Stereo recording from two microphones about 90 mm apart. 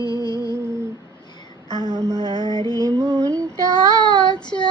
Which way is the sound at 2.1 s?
50° left (ahead or behind).